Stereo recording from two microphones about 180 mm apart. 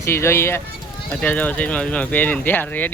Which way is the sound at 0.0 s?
15° left (ahead or behind).